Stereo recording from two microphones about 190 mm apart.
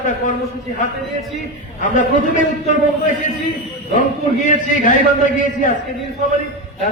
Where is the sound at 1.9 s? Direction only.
40° left (ahead or behind).